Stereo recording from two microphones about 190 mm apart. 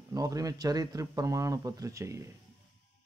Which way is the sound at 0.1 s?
20° right (ahead or behind).